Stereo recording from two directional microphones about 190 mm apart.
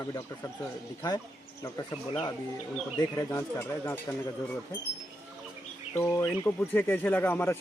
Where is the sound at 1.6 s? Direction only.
20° left (ahead or behind).